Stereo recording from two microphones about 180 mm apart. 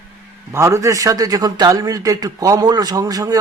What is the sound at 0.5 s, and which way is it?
Speech, 15° right (ahead or behind).